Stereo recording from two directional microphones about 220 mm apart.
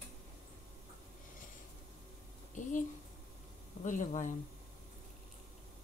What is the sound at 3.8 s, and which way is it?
Speech, 35° left (ahead or behind).